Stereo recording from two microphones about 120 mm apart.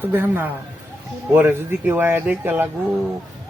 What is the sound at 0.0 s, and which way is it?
A man's voice, 15° right (ahead or behind).